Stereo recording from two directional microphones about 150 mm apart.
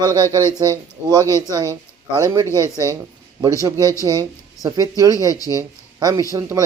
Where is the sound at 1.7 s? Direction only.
25° right (ahead or behind).